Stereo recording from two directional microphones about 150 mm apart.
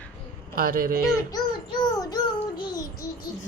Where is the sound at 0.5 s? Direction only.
70° right (ahead or behind).